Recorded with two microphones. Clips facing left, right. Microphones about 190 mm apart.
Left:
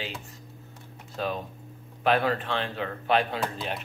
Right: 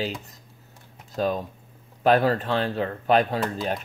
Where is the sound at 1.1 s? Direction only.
40° right (ahead or behind).